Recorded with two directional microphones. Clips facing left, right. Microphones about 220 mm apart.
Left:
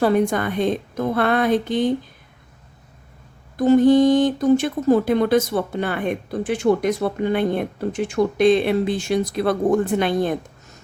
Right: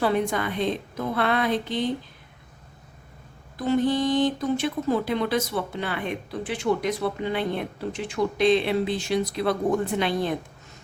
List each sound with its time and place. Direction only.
0.0 s speech: 45° left (ahead or behind)
3.6 s speech: 45° left (ahead or behind)